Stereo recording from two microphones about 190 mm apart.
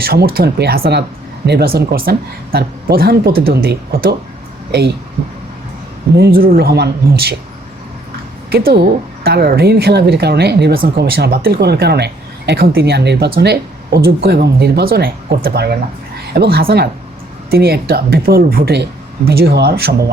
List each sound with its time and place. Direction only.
0.0 s speech: 55° right (ahead or behind)
6.1 s speech: 55° right (ahead or behind)
8.4 s speech: 55° right (ahead or behind)